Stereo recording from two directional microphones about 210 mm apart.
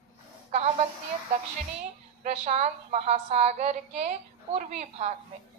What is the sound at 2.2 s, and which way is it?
A woman's voice, 30° right (ahead or behind).